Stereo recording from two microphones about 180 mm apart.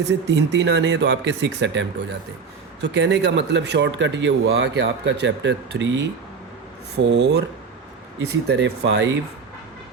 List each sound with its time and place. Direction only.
0.0 s speech: 75° right (ahead or behind); by 2.1 s 90° right
2.8 s speech: 80° right